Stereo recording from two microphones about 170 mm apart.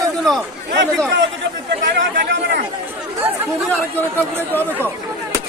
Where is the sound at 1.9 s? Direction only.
90° right.